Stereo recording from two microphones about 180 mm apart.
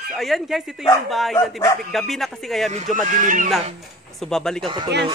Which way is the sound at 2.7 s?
40° right (ahead or behind).